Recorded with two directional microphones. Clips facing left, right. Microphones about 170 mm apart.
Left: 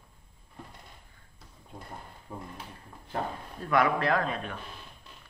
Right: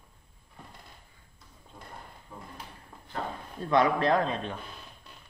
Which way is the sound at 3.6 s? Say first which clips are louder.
Right 2 dB; 25° right (ahead or behind).